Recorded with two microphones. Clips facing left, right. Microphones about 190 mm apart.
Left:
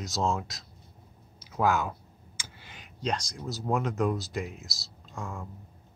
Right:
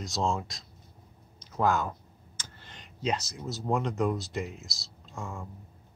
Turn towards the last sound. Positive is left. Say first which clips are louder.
# left 1 dB
turn(degrees=0)  # may be behind; listen again after turning